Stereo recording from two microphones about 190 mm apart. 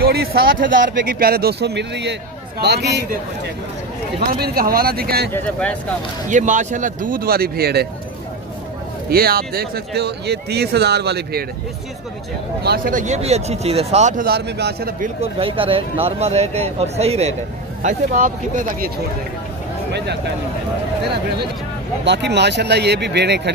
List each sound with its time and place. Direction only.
0.0 s speech: 55° right (ahead or behind)
4.3 s speech: 50° right (ahead or behind)
5.3 s speech: 10° left (ahead or behind)
6.2 s speech: 40° right (ahead or behind); by 7.9 s 55° right (ahead or behind)
9.1 s speech: 55° right (ahead or behind)
12.6 s speech: 50° right (ahead or behind)
15.3 s speech: 30° right (ahead or behind); by 18.9 s 45° right (ahead or behind)
22.0 s speech: 65° right (ahead or behind)